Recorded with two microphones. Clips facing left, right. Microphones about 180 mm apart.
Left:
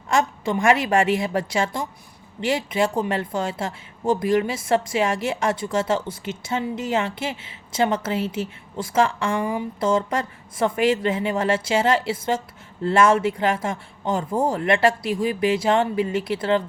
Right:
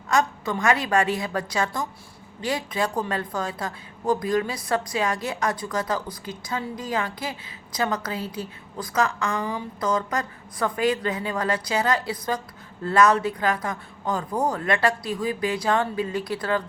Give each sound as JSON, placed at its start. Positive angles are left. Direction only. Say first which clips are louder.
{"t": 0.1, "sound": "a woman's voice", "louder": "left 2 dB", "side_deg": 25}